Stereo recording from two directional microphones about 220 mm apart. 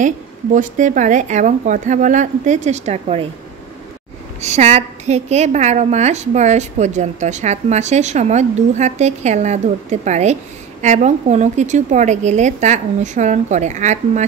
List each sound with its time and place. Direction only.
0.6 s a woman's voice: 35° right (ahead or behind)
4.4 s a woman's voice: 30° right (ahead or behind)